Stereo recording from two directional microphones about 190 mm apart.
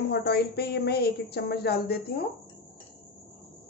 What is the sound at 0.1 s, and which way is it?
Speech, 60° left (ahead or behind).